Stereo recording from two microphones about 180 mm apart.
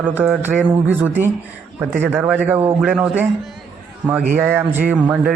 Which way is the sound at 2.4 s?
10° right (ahead or behind).